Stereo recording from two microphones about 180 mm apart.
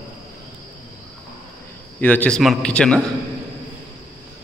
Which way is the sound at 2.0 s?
10° left (ahead or behind).